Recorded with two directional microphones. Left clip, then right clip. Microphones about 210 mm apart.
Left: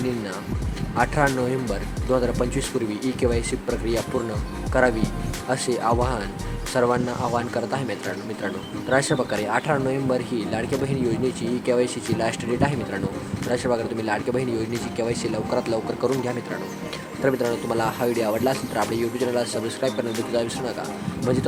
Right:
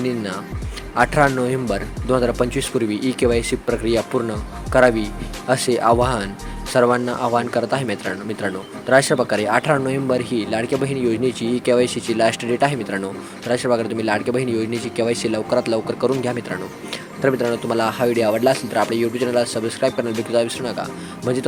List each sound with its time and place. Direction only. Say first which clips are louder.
0.9 s speech: right 5 dB; 20° right (ahead or behind)